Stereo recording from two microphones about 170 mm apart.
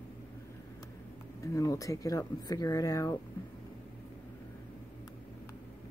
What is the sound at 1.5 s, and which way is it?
Speech, 20° left (ahead or behind).